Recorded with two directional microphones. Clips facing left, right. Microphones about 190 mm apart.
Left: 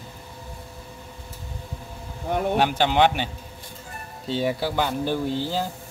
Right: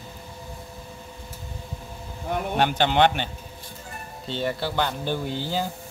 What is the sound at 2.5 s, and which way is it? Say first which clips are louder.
Speech: right 1 dB; 5° left (ahead or behind).